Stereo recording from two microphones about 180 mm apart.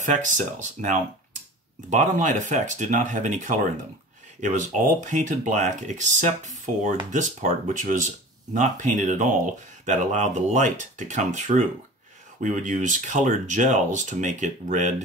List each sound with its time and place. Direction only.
0.0 s speech: 45° right (ahead or behind)